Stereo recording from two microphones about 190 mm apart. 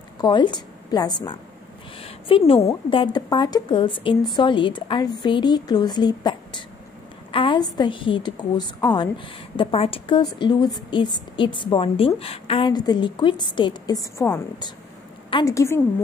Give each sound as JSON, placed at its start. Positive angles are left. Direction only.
{"t": 0.2, "sound": "a woman's voice", "side_deg": 25}